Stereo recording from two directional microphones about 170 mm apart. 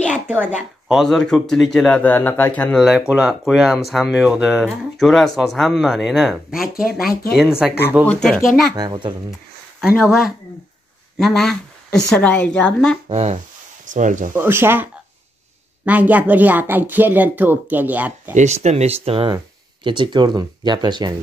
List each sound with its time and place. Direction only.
0.8 s speech: centre (ahead or behind)
2.8 s speech: 5° right (ahead or behind)
6.6 s speech: 60° left (ahead or behind)
7.3 s speech: 5° right (ahead or behind)
8.7 s speech: 25° right (ahead or behind)
10.0 s speech: centre (ahead or behind)
13.1 s speech: 40° right (ahead or behind)
14.3 s speech: 15° right (ahead or behind)
18.3 s speech: 45° right (ahead or behind); by 21.1 s 25° right (ahead or behind)